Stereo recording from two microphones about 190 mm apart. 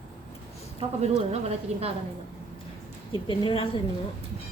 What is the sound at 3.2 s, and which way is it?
Speech, 25° left (ahead or behind).